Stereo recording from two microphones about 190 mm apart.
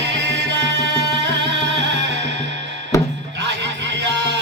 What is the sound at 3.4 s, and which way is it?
Music, 70° right (ahead or behind).